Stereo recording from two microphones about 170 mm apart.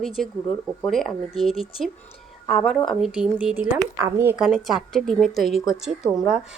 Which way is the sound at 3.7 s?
20° right (ahead or behind).